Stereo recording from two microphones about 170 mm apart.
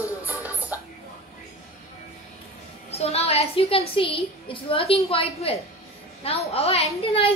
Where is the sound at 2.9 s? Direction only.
35° left (ahead or behind).